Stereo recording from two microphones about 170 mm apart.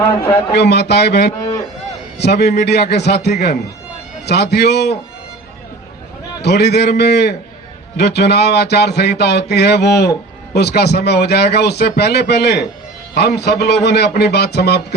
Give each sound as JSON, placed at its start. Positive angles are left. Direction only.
{"t": 0.0, "sound": "a man's voice", "side_deg": 15}
{"t": 0.5, "sound": "speech", "side_deg": 75}
{"t": 6.4, "sound": "speech", "side_deg": 75}